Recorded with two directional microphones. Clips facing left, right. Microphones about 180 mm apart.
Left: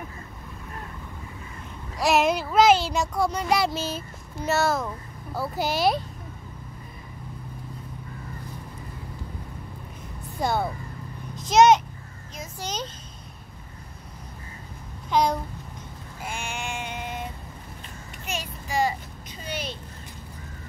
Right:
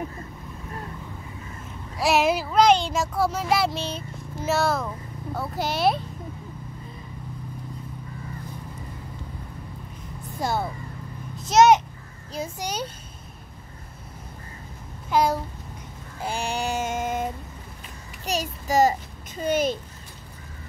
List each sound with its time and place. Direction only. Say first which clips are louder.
2.0 s a child's voice: even; centre (ahead or behind)
10.4 s a child's voice: left 1 dB; centre (ahead or behind)
15.0 s a child's voice: right 1 dB; 5° right (ahead or behind)
16.2 s a sound: right 6 dB; 35° right (ahead or behind)